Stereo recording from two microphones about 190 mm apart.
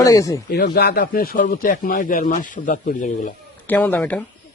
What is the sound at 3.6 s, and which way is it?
Speech, 10° left (ahead or behind).